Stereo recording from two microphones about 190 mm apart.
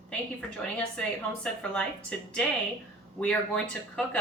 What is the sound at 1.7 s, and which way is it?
Speech, 5° left (ahead or behind).